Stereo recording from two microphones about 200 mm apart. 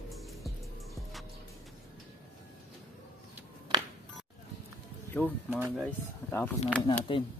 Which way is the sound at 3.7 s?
20° right (ahead or behind).